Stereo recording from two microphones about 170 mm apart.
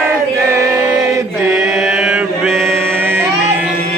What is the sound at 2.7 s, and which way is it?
Music, 15° right (ahead or behind).